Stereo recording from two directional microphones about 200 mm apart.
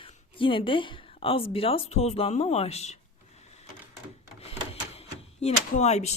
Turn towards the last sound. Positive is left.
turn(degrees=35)  # may be behind; listen again after turning